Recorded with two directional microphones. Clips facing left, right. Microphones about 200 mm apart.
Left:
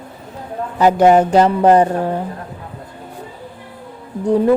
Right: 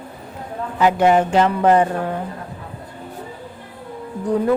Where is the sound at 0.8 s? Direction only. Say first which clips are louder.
Left 4 dB; 40° left (ahead or behind).